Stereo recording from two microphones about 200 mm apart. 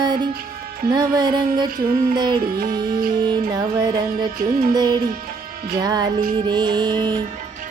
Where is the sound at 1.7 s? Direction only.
45° right (ahead or behind).